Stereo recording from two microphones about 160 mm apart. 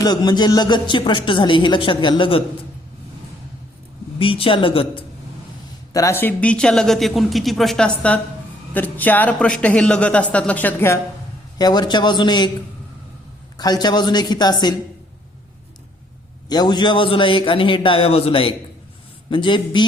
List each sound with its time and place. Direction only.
0.0 s speech: 25° left (ahead or behind)
4.2 s a man's voice: 35° left (ahead or behind)
5.9 s speech: 20° left (ahead or behind)
11.5 s speech: 25° left (ahead or behind)
13.6 s speech: 25° left (ahead or behind)
16.5 s a man's voice: 25° left (ahead or behind)